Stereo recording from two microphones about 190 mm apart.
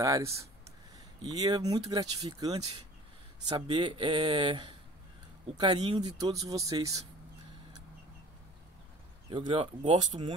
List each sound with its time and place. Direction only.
0.0 s speech: 15° right (ahead or behind)
9.3 s speech: 25° right (ahead or behind)